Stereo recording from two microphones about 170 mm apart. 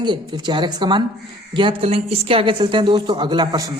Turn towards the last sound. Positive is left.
turn(degrees=-25)  # may be behind; listen again after turning